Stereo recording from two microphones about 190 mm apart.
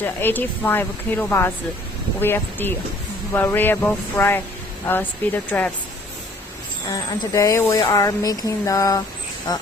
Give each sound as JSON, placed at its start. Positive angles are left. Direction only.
{"t": 0.0, "sound": "speech", "side_deg": 10}
{"t": 6.9, "sound": "speech", "side_deg": 20}